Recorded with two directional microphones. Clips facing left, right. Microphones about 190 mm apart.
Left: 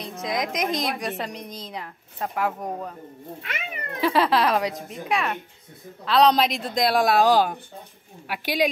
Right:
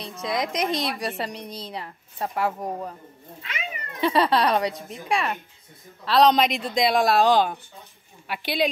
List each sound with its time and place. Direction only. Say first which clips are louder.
0.2 s a woman's voice: right 1 dB; centre (ahead or behind)
0.7 s a woman's voice: even; 30° right (ahead or behind)
0.9 s a woman's voice: even; centre (ahead or behind)
3.4 s cat: right 1 dB; 60° left (ahead or behind)
4.0 s a woman's voice: even; centre (ahead or behind)